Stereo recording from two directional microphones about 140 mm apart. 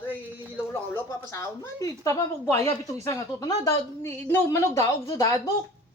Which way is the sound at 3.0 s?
20° left (ahead or behind).